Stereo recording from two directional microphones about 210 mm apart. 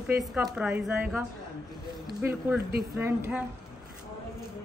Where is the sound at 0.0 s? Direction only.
Centre (ahead or behind).